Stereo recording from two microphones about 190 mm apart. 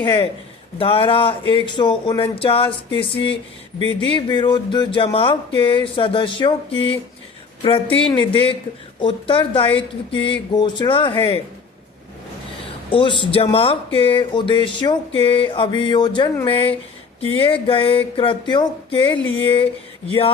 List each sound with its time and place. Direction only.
0.0 s speech: 25° left (ahead or behind)
3.8 s speech: 30° right (ahead or behind)
4.1 s speech: 25° left (ahead or behind)
7.9 s speech: 25° left (ahead or behind)
12.9 s speech: 25° left (ahead or behind)